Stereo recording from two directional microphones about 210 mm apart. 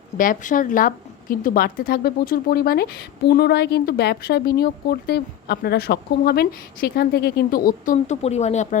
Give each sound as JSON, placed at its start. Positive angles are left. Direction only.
{"t": 0.2, "sound": "a woman's voice", "side_deg": 40}